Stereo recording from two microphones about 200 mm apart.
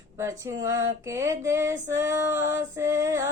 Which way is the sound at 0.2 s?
15° right (ahead or behind).